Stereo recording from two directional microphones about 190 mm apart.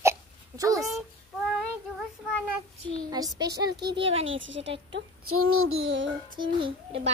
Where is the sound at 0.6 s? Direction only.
15° right (ahead or behind).